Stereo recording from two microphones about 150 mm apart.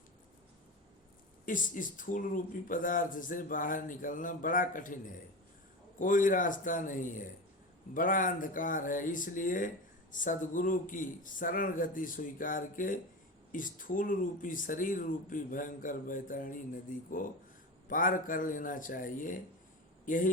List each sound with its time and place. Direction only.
1.5 s speech: 60° left (ahead or behind)
6.0 s speech: 60° left (ahead or behind)